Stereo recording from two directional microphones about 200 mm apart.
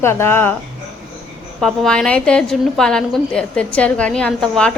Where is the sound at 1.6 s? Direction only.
5° left (ahead or behind).